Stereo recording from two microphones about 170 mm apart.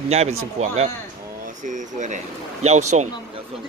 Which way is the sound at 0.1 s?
40° right (ahead or behind).